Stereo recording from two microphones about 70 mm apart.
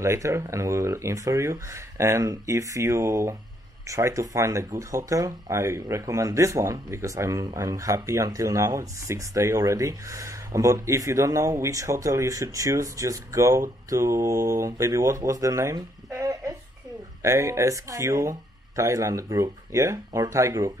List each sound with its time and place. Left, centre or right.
0.0 s speech: right